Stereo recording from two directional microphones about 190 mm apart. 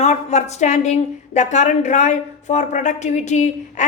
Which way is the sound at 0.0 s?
35° left (ahead or behind).